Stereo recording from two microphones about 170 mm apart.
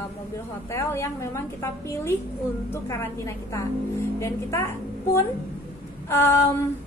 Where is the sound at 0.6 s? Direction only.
15° left (ahead or behind).